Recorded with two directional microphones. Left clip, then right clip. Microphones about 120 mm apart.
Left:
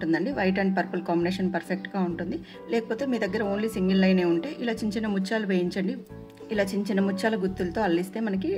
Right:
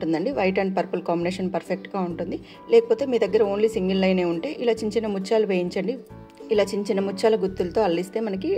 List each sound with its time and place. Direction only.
0.0 s a woman's voice: 40° right (ahead or behind)